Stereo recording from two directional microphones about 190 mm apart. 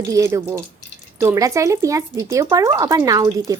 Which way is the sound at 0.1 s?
15° right (ahead or behind).